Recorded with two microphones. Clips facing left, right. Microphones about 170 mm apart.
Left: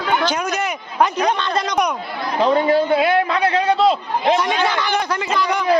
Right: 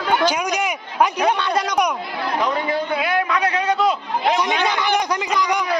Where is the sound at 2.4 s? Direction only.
30° left (ahead or behind).